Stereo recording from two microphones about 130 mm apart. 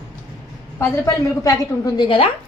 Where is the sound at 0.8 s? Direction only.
25° left (ahead or behind).